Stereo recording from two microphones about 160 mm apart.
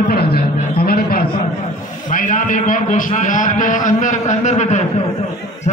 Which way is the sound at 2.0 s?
55° left (ahead or behind).